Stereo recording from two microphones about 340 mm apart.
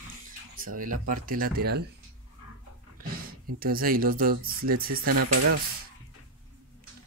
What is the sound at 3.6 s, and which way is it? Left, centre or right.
Speech, right.